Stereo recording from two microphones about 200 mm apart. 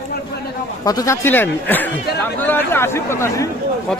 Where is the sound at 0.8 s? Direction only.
15° left (ahead or behind).